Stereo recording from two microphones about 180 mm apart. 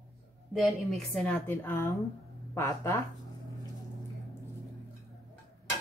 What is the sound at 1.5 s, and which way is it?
A woman's voice, 15° left (ahead or behind).